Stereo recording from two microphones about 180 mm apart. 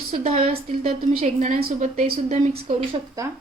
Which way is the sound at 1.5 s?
55° right (ahead or behind).